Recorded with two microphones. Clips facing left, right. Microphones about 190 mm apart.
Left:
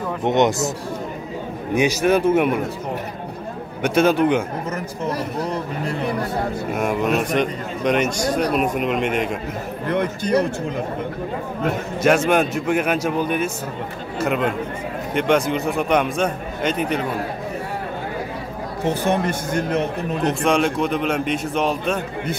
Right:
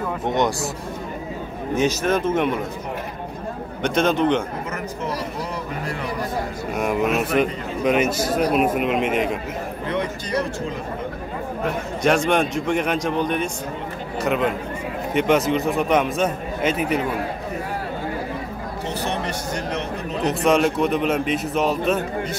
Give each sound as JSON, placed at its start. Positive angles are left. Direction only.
{"t": 0.2, "sound": "speech", "side_deg": 20}
{"t": 1.8, "sound": "speech", "side_deg": 10}
{"t": 3.8, "sound": "speech", "side_deg": 10}
{"t": 6.7, "sound": "a man's voice", "side_deg": 0}
{"t": 9.8, "sound": "a man's voice", "side_deg": 55}
{"t": 12.0, "sound": "a man's voice", "side_deg": 5}
{"t": 18.9, "sound": "speech", "side_deg": 50}
{"t": 20.2, "sound": "a man's voice", "side_deg": 0}